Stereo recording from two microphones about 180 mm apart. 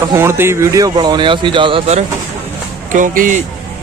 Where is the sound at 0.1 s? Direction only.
15° right (ahead or behind); by 2.0 s 35° right (ahead or behind).